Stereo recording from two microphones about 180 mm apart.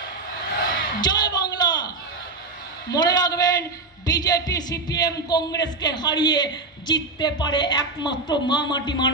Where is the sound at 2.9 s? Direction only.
20° left (ahead or behind).